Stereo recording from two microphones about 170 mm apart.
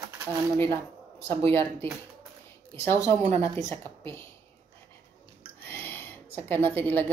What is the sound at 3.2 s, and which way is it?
Speech, 40° right (ahead or behind).